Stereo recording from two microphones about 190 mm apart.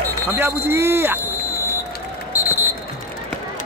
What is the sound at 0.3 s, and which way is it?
Speech, 10° right (ahead or behind).